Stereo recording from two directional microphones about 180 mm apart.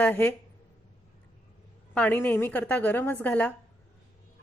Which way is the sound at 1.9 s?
10° left (ahead or behind).